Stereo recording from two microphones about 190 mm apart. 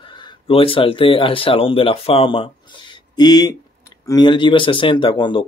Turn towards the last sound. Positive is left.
turn(degrees=25)  # may be behind; listen again after turning